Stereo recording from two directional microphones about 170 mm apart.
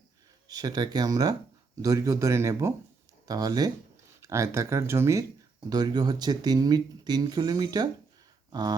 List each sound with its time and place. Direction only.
0.4 s speech: 20° right (ahead or behind)